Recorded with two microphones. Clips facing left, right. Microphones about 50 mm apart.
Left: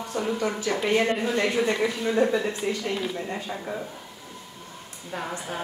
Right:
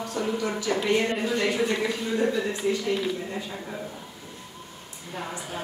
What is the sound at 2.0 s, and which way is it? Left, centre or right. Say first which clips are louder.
Speech: left 6 dB; left.